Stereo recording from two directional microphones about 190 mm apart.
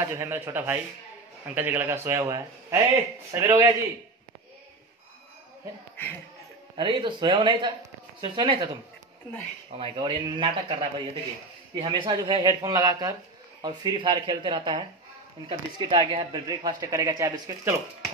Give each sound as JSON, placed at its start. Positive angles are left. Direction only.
{"t": 0.0, "sound": "a man's voice", "side_deg": -15}
{"t": 6.8, "sound": "speech", "side_deg": -25}
{"t": 9.7, "sound": "speech", "side_deg": -30}